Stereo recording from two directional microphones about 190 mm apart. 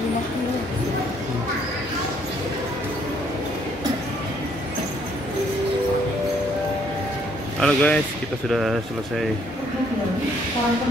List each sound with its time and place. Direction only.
7.6 s speech: 5° left (ahead or behind)